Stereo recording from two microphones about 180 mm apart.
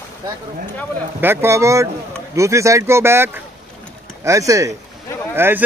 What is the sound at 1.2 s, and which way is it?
Speech, 15° right (ahead or behind).